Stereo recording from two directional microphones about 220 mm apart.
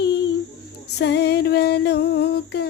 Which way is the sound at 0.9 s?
50° left (ahead or behind).